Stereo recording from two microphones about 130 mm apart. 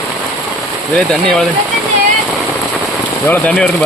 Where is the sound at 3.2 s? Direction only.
10° left (ahead or behind).